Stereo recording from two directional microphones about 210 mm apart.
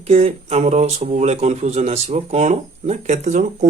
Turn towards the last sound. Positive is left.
turn(degrees=-35)  # may be behind; listen again after turning